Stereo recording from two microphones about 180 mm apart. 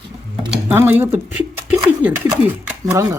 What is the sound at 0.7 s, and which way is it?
Speech, 10° right (ahead or behind).